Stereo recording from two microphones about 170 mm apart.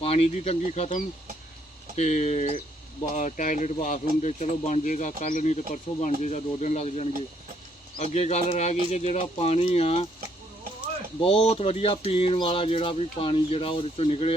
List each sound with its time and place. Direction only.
0.0 s speech: 35° left (ahead or behind)
8.1 s speech: 40° left (ahead or behind)
11.2 s speech: 30° left (ahead or behind)